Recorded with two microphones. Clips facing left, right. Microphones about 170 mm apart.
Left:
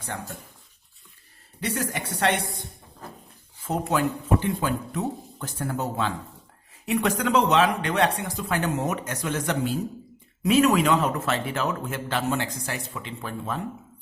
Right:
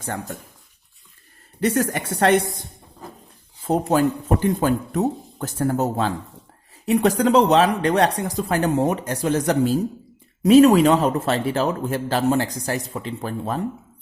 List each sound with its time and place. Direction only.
1.6 s speech: 50° right (ahead or behind)
3.7 s a man's voice: 35° right (ahead or behind)